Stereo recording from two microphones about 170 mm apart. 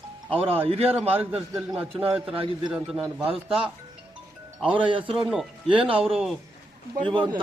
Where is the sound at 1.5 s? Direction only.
5° right (ahead or behind).